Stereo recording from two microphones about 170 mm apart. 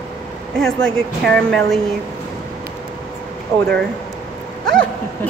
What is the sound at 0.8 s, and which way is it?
Speech, 5° left (ahead or behind).